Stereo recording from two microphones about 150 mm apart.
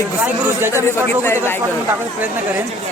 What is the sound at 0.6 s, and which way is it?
Speech, 15° right (ahead or behind).